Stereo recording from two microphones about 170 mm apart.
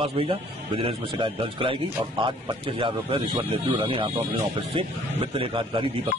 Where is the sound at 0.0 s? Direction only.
30° right (ahead or behind).